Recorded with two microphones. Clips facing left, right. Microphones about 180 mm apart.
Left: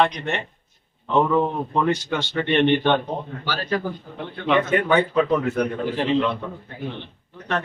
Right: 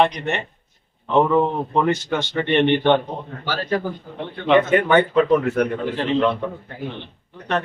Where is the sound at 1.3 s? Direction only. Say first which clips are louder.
Right 2 dB; 20° right (ahead or behind).